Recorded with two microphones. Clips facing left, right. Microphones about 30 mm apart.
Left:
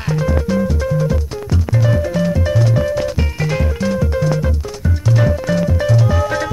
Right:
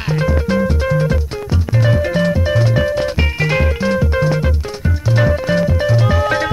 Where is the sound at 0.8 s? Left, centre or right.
Right.